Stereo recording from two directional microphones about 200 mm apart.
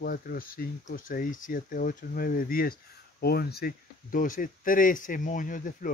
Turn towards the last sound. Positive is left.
turn(degrees=45)  # may be behind; listen again after turning